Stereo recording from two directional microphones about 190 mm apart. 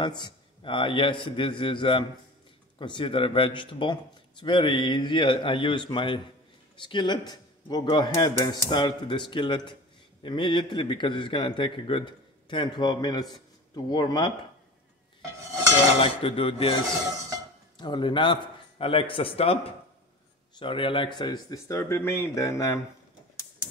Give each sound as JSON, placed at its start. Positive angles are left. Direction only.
{"t": 0.0, "sound": "a man's voice", "side_deg": 25}
{"t": 16.0, "sound": "a man's voice", "side_deg": 30}
{"t": 17.7, "sound": "a man's voice", "side_deg": 25}